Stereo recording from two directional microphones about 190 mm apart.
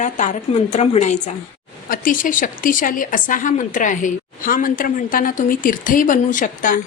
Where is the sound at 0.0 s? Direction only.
40° left (ahead or behind).